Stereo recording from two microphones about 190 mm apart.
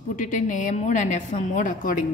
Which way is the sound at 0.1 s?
45° left (ahead or behind).